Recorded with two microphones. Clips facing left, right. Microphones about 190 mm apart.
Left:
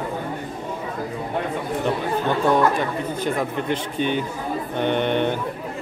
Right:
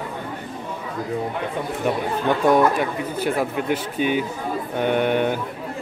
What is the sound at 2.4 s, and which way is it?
Speech, 10° right (ahead or behind).